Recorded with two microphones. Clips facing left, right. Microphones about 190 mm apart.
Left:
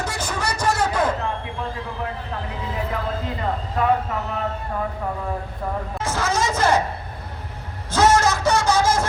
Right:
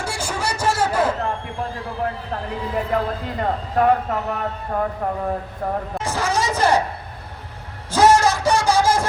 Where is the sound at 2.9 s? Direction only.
50° right (ahead or behind).